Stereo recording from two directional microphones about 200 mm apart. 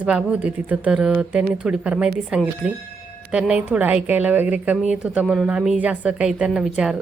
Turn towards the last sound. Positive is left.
turn(degrees=-5)  # may be behind; listen again after turning